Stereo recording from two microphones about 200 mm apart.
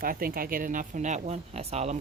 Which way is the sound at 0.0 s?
45° right (ahead or behind).